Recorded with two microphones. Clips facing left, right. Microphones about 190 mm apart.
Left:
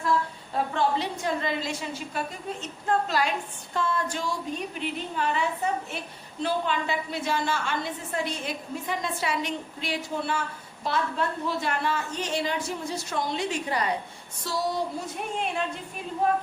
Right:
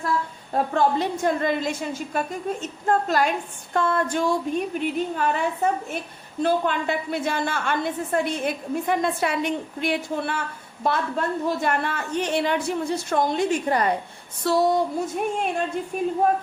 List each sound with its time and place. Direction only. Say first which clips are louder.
0.5 s a woman's voice: right 4 dB; 45° right (ahead or behind)
14.5 s a woman's voice: right 10 dB; 60° right (ahead or behind)
15.1 s a woman's voice: right 5 dB; 50° right (ahead or behind)